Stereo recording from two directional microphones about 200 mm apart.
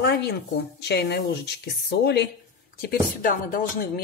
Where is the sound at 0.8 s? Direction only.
55° left (ahead or behind).